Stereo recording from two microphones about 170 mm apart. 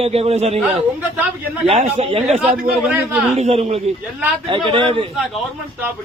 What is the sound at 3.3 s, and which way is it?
A man's voice, 35° right (ahead or behind).